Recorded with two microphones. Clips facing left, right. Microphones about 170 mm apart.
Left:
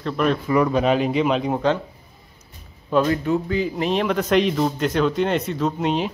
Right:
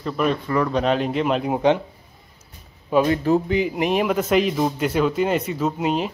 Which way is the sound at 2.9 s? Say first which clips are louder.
Right 1 dB; 10° right (ahead or behind).